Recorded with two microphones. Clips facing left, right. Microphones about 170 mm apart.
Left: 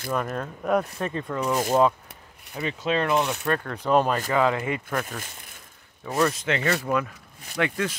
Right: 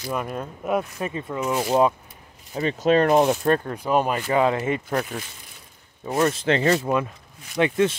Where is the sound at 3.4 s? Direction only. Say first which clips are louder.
Right 5 dB; 30° right (ahead or behind).